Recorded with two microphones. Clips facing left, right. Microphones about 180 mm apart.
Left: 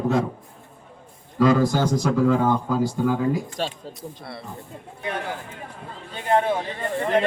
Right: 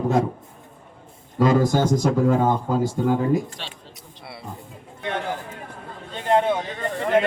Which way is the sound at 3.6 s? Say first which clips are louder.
Left 10 dB; 40° left (ahead or behind).